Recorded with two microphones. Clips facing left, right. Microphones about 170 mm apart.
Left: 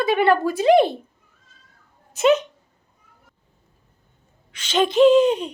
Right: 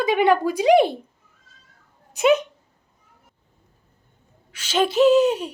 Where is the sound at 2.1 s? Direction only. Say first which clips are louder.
Left 1 dB; 10° right (ahead or behind).